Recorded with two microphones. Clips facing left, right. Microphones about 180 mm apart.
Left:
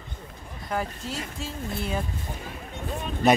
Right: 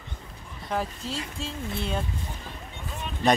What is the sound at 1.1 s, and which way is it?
Speech, 30° right (ahead or behind).